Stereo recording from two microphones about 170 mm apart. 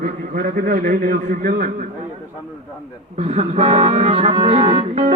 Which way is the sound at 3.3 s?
35° right (ahead or behind).